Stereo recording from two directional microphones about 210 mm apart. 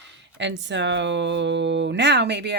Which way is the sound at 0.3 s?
60° right (ahead or behind).